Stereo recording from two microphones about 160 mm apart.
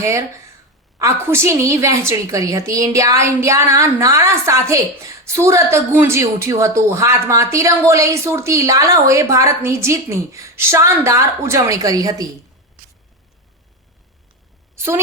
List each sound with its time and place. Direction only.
0.0 s a woman's voice: 15° right (ahead or behind)